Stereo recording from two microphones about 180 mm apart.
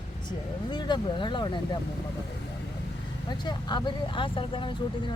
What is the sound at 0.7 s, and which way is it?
Speech, 25° left (ahead or behind).